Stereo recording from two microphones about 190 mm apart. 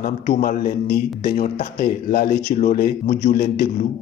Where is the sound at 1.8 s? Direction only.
50° left (ahead or behind).